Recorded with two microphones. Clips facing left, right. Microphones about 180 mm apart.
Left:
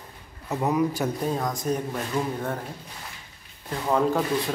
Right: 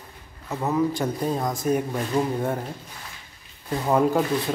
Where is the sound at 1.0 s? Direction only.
Centre (ahead or behind).